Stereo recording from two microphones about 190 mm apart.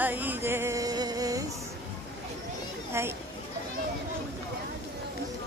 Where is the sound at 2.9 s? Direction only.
15° right (ahead or behind).